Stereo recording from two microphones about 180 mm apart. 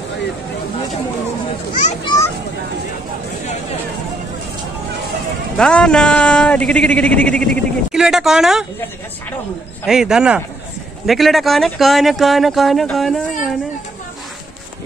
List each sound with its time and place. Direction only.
2.0 s children playing: 15° left (ahead or behind)
5.6 s speech: 5° left (ahead or behind)
9.8 s speech: 5° right (ahead or behind)